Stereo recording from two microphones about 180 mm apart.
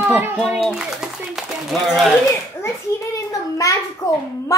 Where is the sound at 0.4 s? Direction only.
Centre (ahead or behind).